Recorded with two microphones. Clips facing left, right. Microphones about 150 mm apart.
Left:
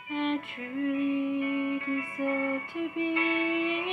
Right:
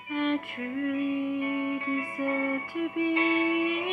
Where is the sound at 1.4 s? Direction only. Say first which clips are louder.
Even; 30° right (ahead or behind).